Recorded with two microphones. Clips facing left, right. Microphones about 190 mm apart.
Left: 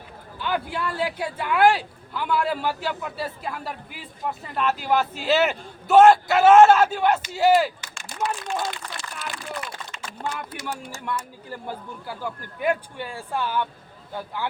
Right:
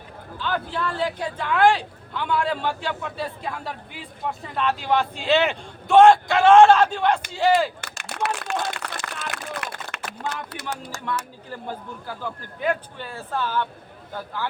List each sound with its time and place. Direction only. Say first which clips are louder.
0.3 s speech: even; 10° left (ahead or behind)
7.8 s run: right 1 dB; 70° right (ahead or behind)
9.3 s a sound: right 1 dB; 70° right (ahead or behind)
10.5 s speech: even; 75° right (ahead or behind)
12.0 s speech: left 1 dB; 10° left (ahead or behind)